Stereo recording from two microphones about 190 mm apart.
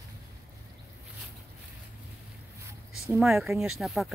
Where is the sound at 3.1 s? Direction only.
Centre (ahead or behind).